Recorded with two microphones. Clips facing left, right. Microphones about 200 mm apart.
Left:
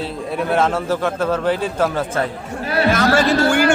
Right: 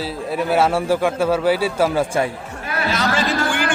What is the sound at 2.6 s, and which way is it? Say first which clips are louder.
Chatter: left 7 dB; 35° left (ahead or behind).